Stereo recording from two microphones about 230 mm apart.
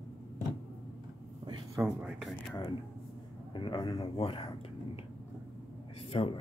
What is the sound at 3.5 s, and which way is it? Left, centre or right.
Speech, left.